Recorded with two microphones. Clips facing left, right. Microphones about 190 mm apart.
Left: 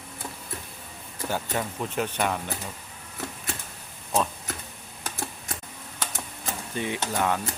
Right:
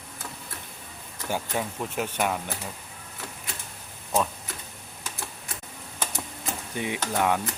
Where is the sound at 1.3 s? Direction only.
5° right (ahead or behind).